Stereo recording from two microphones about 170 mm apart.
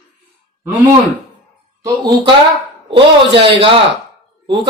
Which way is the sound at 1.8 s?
20° right (ahead or behind).